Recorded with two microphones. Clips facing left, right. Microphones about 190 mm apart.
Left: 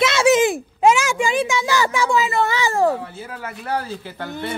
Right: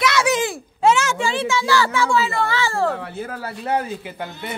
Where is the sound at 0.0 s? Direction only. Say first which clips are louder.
Left 4 dB; 25° left (ahead or behind).